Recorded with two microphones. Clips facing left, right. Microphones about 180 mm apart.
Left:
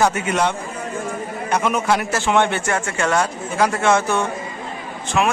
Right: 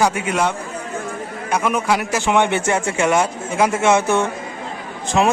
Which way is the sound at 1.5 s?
10° right (ahead or behind).